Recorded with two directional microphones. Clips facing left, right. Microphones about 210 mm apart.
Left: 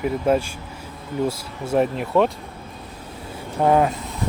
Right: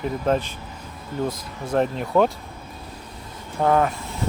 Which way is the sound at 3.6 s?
20° left (ahead or behind).